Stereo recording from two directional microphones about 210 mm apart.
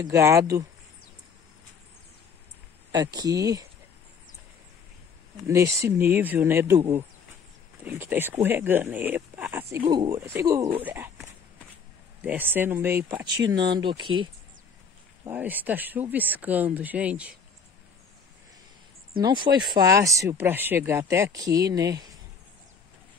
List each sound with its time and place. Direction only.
0.0 s speech: 15° right (ahead or behind)
2.9 s speech: 20° right (ahead or behind)
5.5 s speech: 15° right (ahead or behind)
7.8 s speech: 10° right (ahead or behind)
15.2 s speech: 10° right (ahead or behind)
19.2 s speech: 20° right (ahead or behind)
21.7 s speech: 55° right (ahead or behind)